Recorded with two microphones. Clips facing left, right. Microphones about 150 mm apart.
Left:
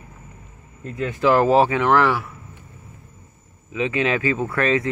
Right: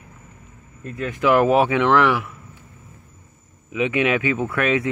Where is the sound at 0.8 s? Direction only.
25° left (ahead or behind).